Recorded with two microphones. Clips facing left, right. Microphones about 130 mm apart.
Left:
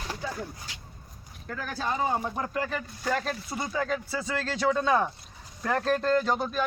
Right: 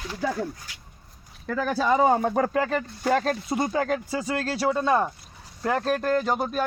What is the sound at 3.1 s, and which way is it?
Speech, 60° right (ahead or behind).